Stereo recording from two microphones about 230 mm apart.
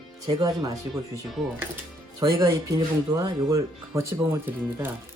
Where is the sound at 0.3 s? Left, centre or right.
Centre.